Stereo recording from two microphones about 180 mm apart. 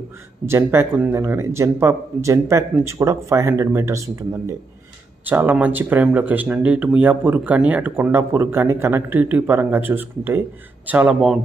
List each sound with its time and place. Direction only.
0.5 s speech: 15° right (ahead or behind)